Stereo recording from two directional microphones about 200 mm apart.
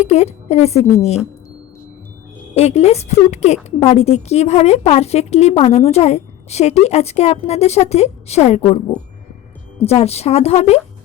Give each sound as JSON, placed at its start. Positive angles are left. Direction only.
{"t": 0.0, "sound": "a woman's voice", "side_deg": 35}
{"t": 2.6, "sound": "a woman's voice", "side_deg": 35}
{"t": 9.8, "sound": "a woman's voice", "side_deg": 30}